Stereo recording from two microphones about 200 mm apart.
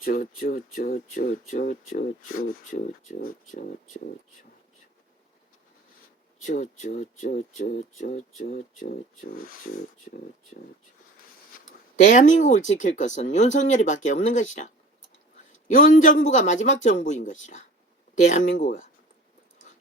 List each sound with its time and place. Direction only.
0.0 s speech: 45° left (ahead or behind)
6.5 s speech: 40° left (ahead or behind)
12.0 s speech: 40° left (ahead or behind)